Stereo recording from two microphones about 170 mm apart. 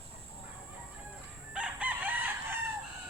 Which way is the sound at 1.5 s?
5° right (ahead or behind).